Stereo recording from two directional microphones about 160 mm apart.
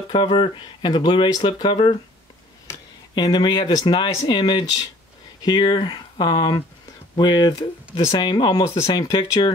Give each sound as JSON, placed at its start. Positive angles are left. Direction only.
{"t": 0.1, "sound": "speech", "side_deg": 30}
{"t": 3.2, "sound": "speech", "side_deg": 25}